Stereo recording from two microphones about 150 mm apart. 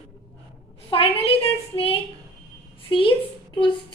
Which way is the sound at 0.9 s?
40° left (ahead or behind).